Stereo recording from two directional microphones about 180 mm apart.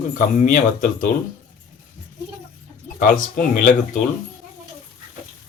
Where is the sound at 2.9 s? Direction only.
45° left (ahead or behind).